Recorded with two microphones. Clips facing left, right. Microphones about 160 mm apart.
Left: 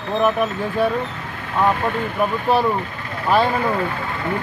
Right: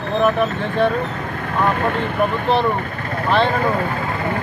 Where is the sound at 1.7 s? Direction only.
55° right (ahead or behind).